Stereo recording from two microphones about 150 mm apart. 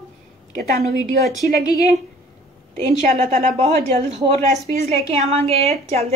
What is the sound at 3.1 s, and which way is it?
A woman's voice, 50° right (ahead or behind).